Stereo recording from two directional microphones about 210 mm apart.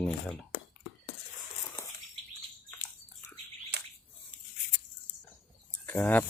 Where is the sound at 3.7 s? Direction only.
55° right (ahead or behind).